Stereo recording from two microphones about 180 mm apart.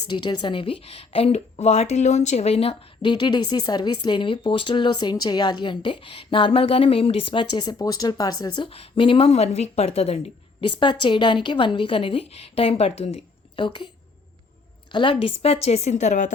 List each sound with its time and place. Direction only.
0.1 s a woman's voice: 25° left (ahead or behind)
15.1 s a woman's voice: 35° left (ahead or behind)